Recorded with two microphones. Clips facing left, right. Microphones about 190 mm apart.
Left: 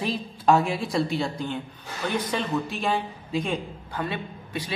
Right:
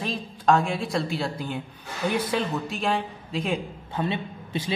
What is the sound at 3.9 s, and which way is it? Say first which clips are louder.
Speech: right 3 dB; 25° right (ahead or behind).